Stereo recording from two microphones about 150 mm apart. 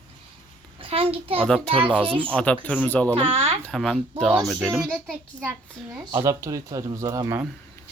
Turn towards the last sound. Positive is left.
turn(degrees=-20)  # may be behind; listen again after turning